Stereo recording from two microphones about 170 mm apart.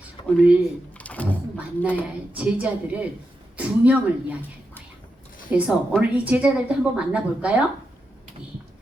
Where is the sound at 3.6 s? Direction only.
10° right (ahead or behind).